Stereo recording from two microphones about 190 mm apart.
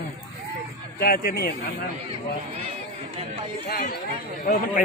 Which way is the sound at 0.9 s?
50° left (ahead or behind).